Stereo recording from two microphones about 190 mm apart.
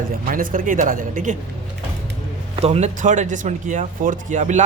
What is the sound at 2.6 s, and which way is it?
Speech, 35° right (ahead or behind).